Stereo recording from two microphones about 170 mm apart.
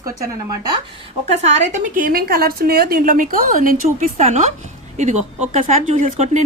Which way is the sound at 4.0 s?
45° right (ahead or behind).